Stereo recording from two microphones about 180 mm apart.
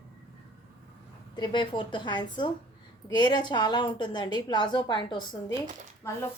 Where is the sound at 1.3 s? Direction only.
25° left (ahead or behind).